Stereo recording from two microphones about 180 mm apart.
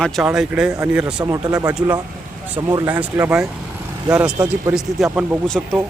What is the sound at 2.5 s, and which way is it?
Speech, 10° right (ahead or behind).